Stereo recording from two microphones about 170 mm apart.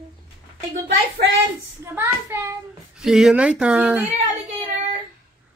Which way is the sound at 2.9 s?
5° right (ahead or behind).